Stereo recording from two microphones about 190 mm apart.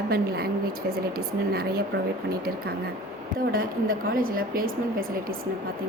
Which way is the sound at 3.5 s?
50° right (ahead or behind).